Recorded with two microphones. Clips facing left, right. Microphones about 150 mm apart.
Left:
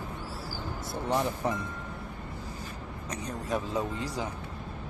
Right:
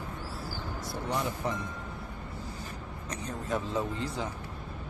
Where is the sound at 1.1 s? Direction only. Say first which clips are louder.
Left 4 dB; 20° left (ahead or behind).